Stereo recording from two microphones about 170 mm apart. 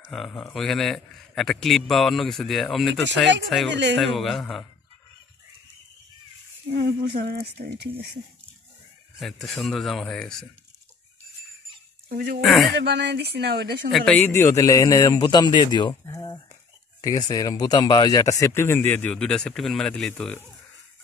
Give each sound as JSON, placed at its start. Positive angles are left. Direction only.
{"t": 0.1, "sound": "a man's voice", "side_deg": 0}
{"t": 3.7, "sound": "speech", "side_deg": -90}
{"t": 4.0, "sound": "a man's voice", "side_deg": 0}
{"t": 7.0, "sound": "speech", "side_deg": -65}
{"t": 9.2, "sound": "a man's voice", "side_deg": 0}
{"t": 12.1, "sound": "speech", "side_deg": -70}
{"t": 12.4, "sound": "a man's voice", "side_deg": 0}
{"t": 12.7, "sound": "speech", "side_deg": -90}
{"t": 13.8, "sound": "a man's voice", "side_deg": 5}